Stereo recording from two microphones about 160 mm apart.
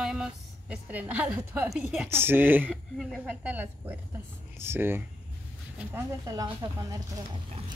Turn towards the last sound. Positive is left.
turn(degrees=-25)  # may be behind; listen again after turning